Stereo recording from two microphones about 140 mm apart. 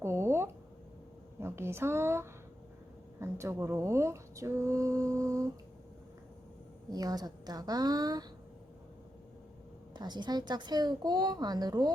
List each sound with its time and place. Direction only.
0.0 s a sound: 20° right (ahead or behind)
1.4 s speech: 15° right (ahead or behind)
6.9 s speech: 30° right (ahead or behind)
9.9 s speech: 30° right (ahead or behind)